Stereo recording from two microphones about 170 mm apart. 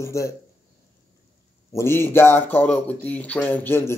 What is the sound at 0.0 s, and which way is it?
Speech, 15° left (ahead or behind).